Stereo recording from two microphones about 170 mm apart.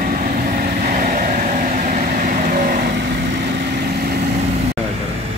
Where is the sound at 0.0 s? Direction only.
55° right (ahead or behind).